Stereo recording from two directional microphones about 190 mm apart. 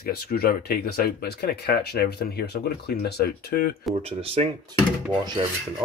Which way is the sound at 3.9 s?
30° right (ahead or behind).